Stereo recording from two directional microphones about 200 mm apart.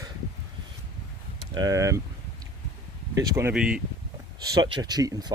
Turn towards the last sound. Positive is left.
turn(degrees=-20)  # may be behind; listen again after turning